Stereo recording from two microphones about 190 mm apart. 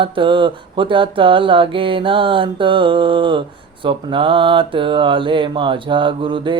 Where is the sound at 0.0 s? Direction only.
25° right (ahead or behind).